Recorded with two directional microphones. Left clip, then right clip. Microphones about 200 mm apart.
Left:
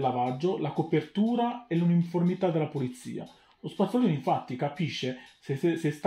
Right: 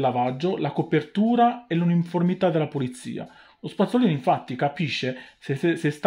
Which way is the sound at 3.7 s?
45° right (ahead or behind).